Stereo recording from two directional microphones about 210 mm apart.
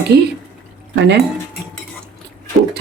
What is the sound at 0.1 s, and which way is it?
Speech, 50° right (ahead or behind).